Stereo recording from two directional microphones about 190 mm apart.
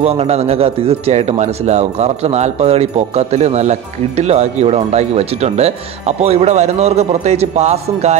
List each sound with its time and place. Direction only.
0.0 s speech: 35° right (ahead or behind)